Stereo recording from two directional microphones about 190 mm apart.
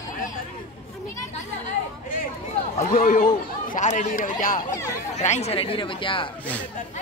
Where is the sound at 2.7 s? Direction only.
45° left (ahead or behind); by 6.3 s 25° left (ahead or behind).